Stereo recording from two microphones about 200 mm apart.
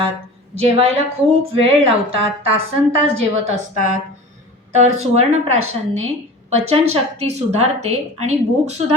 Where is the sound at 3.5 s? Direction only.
35° right (ahead or behind).